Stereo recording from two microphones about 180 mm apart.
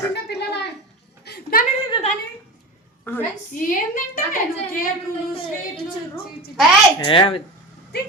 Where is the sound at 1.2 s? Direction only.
55° left (ahead or behind).